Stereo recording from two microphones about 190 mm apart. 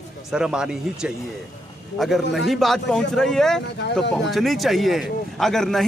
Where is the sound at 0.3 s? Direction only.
5° right (ahead or behind).